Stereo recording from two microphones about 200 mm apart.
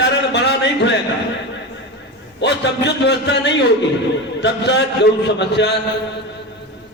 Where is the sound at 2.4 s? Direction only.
60° left (ahead or behind).